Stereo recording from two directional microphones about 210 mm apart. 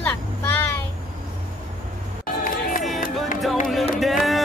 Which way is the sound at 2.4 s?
40° left (ahead or behind).